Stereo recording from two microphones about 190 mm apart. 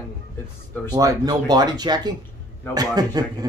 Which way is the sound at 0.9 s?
20° right (ahead or behind).